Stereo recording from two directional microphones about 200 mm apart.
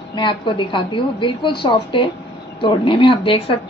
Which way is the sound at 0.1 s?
25° left (ahead or behind).